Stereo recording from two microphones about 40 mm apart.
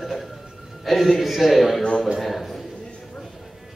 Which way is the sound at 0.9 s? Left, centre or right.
Centre.